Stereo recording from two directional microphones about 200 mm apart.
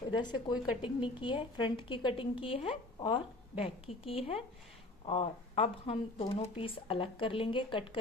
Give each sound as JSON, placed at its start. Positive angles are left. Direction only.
{"t": 0.1, "sound": "a woman's voice", "side_deg": 20}